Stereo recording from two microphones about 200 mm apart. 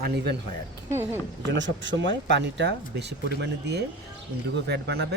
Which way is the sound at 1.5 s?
65° right (ahead or behind).